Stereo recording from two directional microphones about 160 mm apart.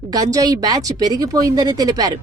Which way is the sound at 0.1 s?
20° right (ahead or behind).